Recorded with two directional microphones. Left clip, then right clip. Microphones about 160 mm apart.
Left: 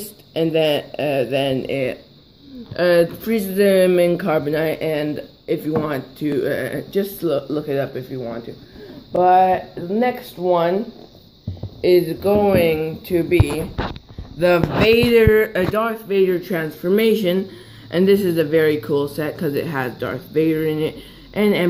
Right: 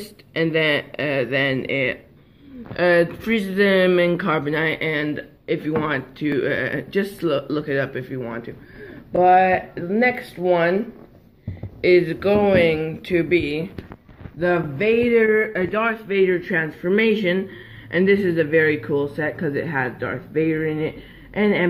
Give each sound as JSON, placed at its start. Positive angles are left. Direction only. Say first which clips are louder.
{"t": 0.3, "sound": "speech", "louder": "left 2 dB", "side_deg": 15}
{"t": 3.3, "sound": "speech", "louder": "left 2 dB", "side_deg": 5}
{"t": 11.8, "sound": "speech", "louder": "left 1 dB", "side_deg": 15}
{"t": 14.4, "sound": "speech", "louder": "left 5 dB", "side_deg": 25}